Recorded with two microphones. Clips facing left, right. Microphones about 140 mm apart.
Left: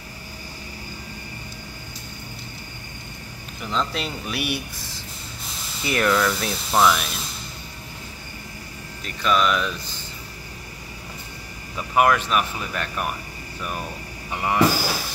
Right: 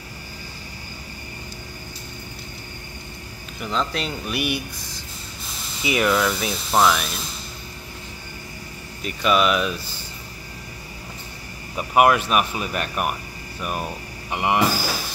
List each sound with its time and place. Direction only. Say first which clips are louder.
3.6 s speech: right 1 dB; centre (ahead or behind)
5.8 s speech: right 1 dB; 5° right (ahead or behind)
9.0 s speech: right 2 dB; 10° right (ahead or behind)
11.7 s speech: right 2 dB; 15° right (ahead or behind)